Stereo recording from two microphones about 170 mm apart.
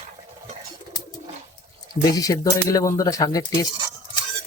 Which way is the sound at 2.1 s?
20° left (ahead or behind).